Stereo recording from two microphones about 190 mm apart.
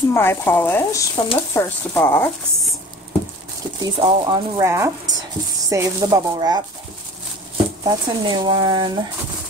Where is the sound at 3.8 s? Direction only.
25° right (ahead or behind).